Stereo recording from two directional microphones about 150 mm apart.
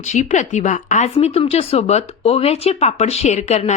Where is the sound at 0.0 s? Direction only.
50° left (ahead or behind).